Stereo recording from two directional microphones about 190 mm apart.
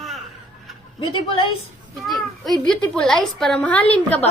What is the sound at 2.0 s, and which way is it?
A child's voice, centre (ahead or behind).